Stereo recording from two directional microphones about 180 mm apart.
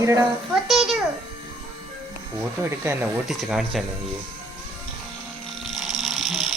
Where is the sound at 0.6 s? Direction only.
Centre (ahead or behind).